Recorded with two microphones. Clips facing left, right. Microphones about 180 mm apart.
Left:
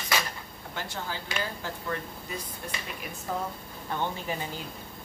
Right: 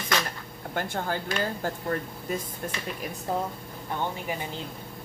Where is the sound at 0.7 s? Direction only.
50° right (ahead or behind).